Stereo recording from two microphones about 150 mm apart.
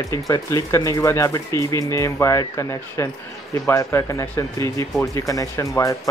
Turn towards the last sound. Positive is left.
turn(degrees=20)  # may be behind; listen again after turning